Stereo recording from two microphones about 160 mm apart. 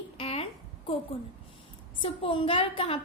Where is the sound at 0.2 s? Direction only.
40° left (ahead or behind).